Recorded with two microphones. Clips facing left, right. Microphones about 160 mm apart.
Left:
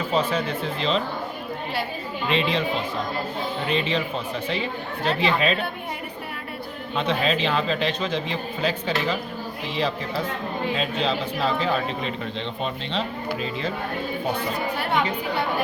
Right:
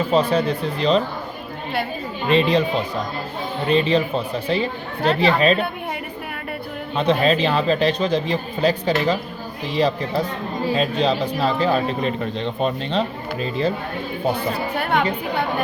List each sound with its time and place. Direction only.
0.1 s speech: 35° right (ahead or behind)
2.2 s speech: 40° right (ahead or behind)
3.7 s speech: 35° right (ahead or behind)
6.9 s speech: 35° right (ahead or behind)
14.8 s speech: 55° right (ahead or behind)